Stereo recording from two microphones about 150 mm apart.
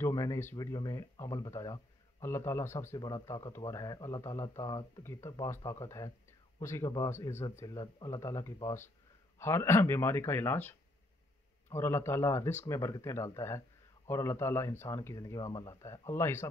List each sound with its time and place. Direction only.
0.0 s speech: 20° left (ahead or behind)